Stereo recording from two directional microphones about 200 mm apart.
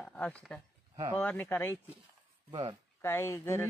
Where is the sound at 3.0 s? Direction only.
15° left (ahead or behind).